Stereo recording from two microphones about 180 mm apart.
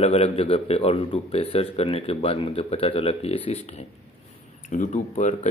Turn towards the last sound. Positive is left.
turn(degrees=40)  # may be behind; listen again after turning